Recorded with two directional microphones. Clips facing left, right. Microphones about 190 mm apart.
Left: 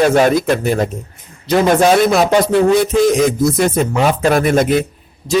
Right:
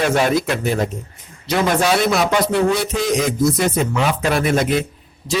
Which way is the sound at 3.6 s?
45° left (ahead or behind).